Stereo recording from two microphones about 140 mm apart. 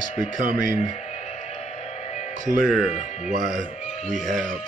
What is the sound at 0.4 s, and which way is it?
Speech, 70° right (ahead or behind).